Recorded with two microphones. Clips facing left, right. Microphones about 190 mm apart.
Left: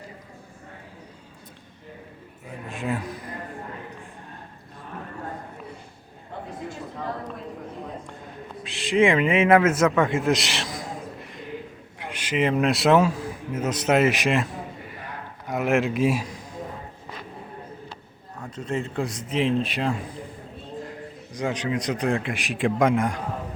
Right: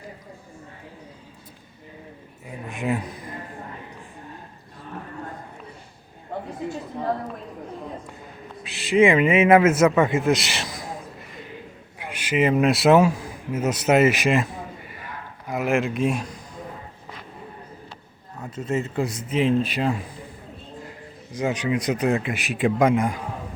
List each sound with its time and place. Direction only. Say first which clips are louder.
2.6 s a sound: right 3 dB; 15° right (ahead or behind)
8.6 s a man's voice: right 2 dB; 5° right (ahead or behind)
11.9 s a man's voice: right 2 dB; 10° right (ahead or behind)
15.4 s a man's voice: even; centre (ahead or behind)
18.5 s a man's voice: right 3 dB; 5° right (ahead or behind)
21.3 s a man's voice: right 3 dB; 5° right (ahead or behind)